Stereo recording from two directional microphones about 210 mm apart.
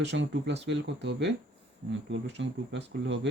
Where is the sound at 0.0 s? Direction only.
55° right (ahead or behind).